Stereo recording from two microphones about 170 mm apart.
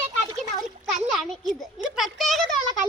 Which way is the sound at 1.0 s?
Centre (ahead or behind).